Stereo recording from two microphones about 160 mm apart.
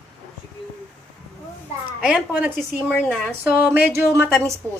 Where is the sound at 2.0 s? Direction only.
10° right (ahead or behind).